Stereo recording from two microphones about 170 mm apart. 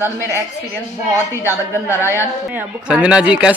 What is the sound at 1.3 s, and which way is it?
Speech, 15° left (ahead or behind).